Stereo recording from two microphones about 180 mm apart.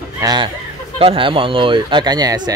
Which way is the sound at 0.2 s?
20° right (ahead or behind).